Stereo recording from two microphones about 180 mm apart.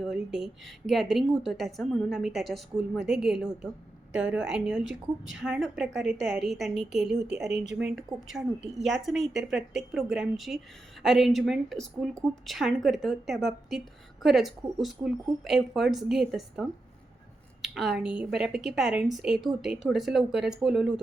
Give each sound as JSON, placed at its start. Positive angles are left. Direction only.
{"t": 0.0, "sound": "a woman's voice", "side_deg": 0}
{"t": 7.5, "sound": "speech", "side_deg": -75}
{"t": 7.8, "sound": "a woman's voice", "side_deg": -5}